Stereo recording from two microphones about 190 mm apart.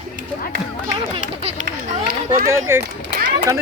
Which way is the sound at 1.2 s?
35° right (ahead or behind).